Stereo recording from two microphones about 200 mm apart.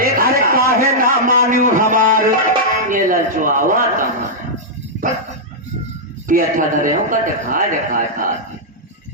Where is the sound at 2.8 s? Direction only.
40° right (ahead or behind).